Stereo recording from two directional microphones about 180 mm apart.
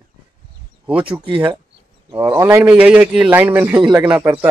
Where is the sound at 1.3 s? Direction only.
10° right (ahead or behind).